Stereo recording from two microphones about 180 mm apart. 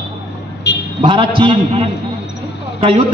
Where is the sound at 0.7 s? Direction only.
65° left (ahead or behind).